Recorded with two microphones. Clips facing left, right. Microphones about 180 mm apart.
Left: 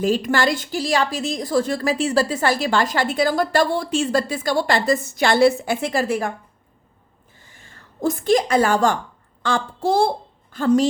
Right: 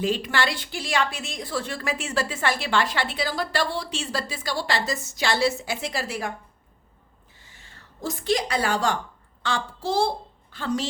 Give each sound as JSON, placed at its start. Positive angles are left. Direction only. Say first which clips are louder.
{"t": 0.0, "sound": "a woman's voice", "louder": "left 6 dB", "side_deg": 45}
{"t": 7.3, "sound": "a sound", "louder": "left 4 dB", "side_deg": 50}
{"t": 9.4, "sound": "a woman's voice", "louder": "left 6 dB", "side_deg": 50}